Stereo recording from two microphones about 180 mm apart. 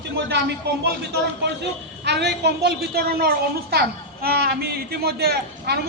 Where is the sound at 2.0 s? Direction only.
70° right (ahead or behind).